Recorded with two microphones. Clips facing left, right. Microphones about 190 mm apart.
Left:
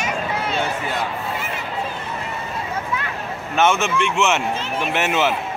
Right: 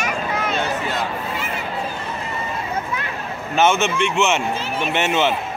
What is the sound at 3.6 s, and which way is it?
Speech, centre (ahead or behind).